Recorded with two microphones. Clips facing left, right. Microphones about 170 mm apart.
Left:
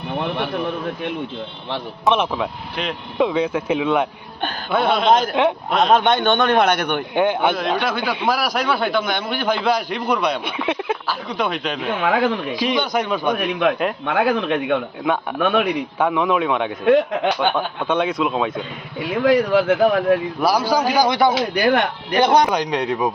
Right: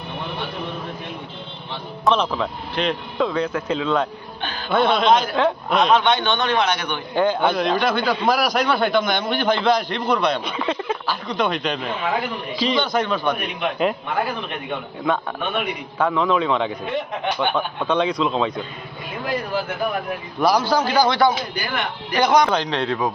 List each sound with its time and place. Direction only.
2.0 s speech: 10° left (ahead or behind)
5.9 s a man's voice: 50° left (ahead or behind)
7.1 s speech: 5° left (ahead or behind)
11.9 s speech: 90° left
12.5 s speech: 10° left (ahead or behind)
14.0 s speech: 90° left
16.0 s speech: 10° left (ahead or behind)
16.8 s speech: 90° left
17.8 s speech: 5° left (ahead or behind)
19.1 s speech: 90° left
20.4 s speech: 10° left (ahead or behind)
21.3 s speech: 75° left (ahead or behind)
22.1 s speech: 30° left (ahead or behind)
22.4 s speech: 15° left (ahead or behind)